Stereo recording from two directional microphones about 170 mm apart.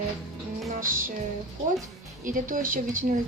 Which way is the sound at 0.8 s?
55° right (ahead or behind).